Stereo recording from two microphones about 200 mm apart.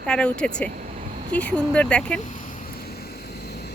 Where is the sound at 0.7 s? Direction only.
40° right (ahead or behind).